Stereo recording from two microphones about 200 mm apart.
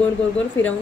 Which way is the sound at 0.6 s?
70° left (ahead or behind).